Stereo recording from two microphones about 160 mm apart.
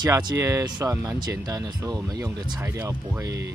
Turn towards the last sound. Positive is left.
turn(degrees=-20)  # may be behind; listen again after turning